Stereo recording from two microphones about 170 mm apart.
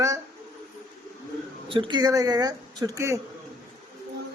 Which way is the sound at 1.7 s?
30° right (ahead or behind).